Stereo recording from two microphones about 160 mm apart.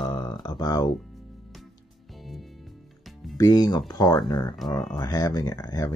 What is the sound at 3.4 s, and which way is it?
Speech, 25° left (ahead or behind).